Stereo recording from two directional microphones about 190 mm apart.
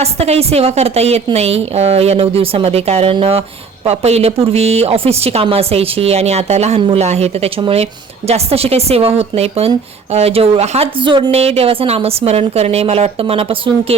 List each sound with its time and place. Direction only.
0.0 s a woman's voice: 35° right (ahead or behind)